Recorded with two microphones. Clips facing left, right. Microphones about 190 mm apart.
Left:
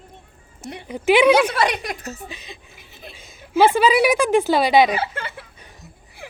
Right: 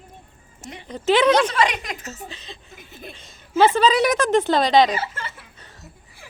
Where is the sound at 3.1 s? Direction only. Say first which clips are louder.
Left 1 dB; 10° left (ahead or behind).